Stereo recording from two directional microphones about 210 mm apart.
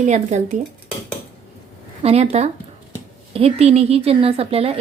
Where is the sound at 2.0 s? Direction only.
30° right (ahead or behind).